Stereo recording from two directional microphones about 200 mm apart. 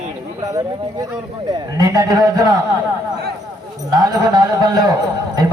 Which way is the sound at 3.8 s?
20° right (ahead or behind).